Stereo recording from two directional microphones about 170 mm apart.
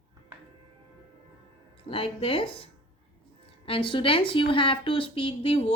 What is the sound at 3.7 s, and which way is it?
A woman's voice, 30° left (ahead or behind).